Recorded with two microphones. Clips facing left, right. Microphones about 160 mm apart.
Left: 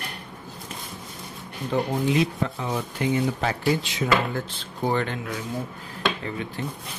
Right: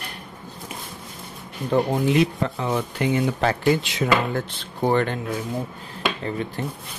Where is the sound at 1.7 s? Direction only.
50° right (ahead or behind).